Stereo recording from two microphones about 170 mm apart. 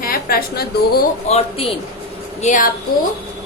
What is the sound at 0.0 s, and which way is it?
A woman's voice, 60° left (ahead or behind).